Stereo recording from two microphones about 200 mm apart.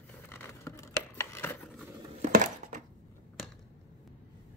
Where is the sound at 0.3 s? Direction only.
10° left (ahead or behind).